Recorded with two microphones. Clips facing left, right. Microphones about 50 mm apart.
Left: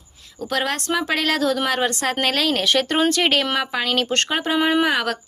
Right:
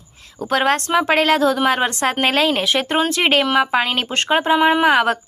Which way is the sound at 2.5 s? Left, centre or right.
Centre.